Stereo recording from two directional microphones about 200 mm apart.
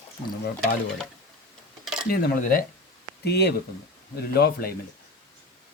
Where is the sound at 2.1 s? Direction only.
45° left (ahead or behind).